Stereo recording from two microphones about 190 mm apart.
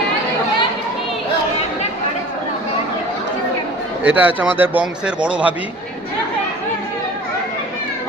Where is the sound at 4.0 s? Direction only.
10° right (ahead or behind).